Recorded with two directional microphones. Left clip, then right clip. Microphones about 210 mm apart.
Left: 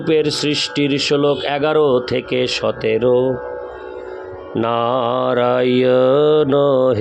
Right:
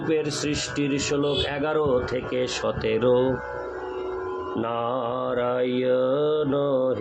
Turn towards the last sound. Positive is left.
turn(degrees=45)  # may be behind; listen again after turning